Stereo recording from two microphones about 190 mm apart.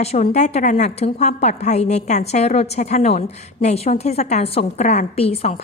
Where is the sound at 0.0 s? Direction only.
35° left (ahead or behind).